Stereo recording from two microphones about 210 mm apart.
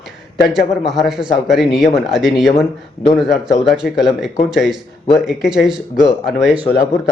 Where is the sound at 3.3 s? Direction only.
35° left (ahead or behind).